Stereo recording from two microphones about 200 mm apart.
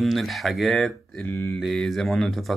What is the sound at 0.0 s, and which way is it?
Speech, centre (ahead or behind).